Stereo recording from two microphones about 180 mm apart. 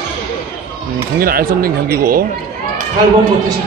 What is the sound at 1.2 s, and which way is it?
A man's voice, 55° right (ahead or behind).